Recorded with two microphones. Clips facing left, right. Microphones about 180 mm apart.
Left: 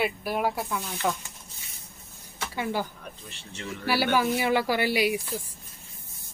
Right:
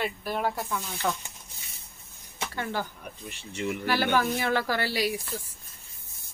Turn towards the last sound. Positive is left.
turn(degrees=15)  # may be behind; listen again after turning